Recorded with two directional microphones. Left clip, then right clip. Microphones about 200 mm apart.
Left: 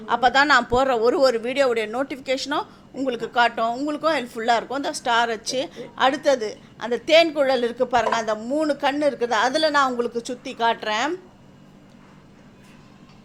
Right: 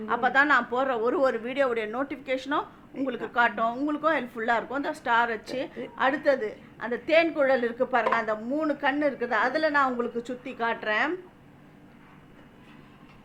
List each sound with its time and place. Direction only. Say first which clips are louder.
0.0 s speech: left 5 dB; 25° left (ahead or behind)